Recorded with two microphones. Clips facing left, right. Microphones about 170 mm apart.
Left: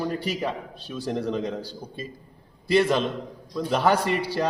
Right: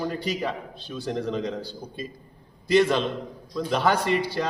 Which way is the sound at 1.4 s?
10° left (ahead or behind).